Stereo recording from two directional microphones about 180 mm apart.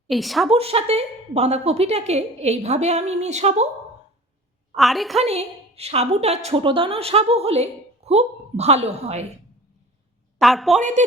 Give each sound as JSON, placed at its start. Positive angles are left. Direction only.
{"t": 0.1, "sound": "a woman's voice", "side_deg": 0}
{"t": 0.5, "sound": "a woman's voice", "side_deg": -35}
{"t": 4.7, "sound": "a woman's voice", "side_deg": 0}
{"t": 5.2, "sound": "a woman's voice", "side_deg": -35}
{"t": 10.4, "sound": "a woman's voice", "side_deg": 0}
{"t": 10.8, "sound": "a woman's voice", "side_deg": -40}